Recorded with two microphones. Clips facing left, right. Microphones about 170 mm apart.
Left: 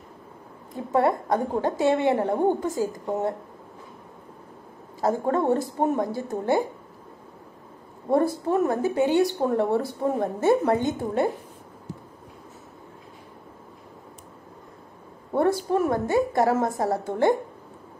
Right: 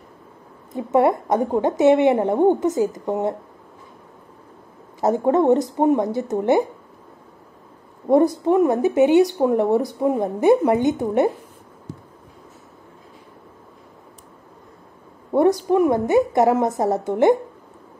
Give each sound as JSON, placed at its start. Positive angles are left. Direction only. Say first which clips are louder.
{"t": 0.7, "sound": "speech", "louder": "right 5 dB", "side_deg": -20}
{"t": 5.0, "sound": "speech", "louder": "right 6 dB", "side_deg": -20}
{"t": 8.1, "sound": "speech", "louder": "right 6 dB", "side_deg": -20}
{"t": 15.3, "sound": "speech", "louder": "right 6 dB", "side_deg": -20}